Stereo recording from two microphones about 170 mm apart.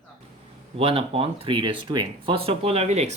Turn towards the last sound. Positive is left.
turn(degrees=-40)  # may be behind; listen again after turning